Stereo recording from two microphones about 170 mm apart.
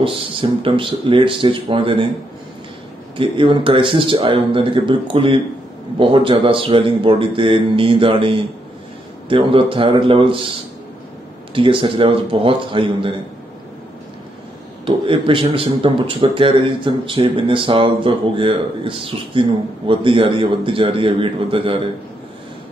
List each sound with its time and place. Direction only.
0.0 s speech: 30° right (ahead or behind)
3.2 s speech: 30° right (ahead or behind)
11.5 s speech: 30° right (ahead or behind)
14.9 s speech: 30° right (ahead or behind)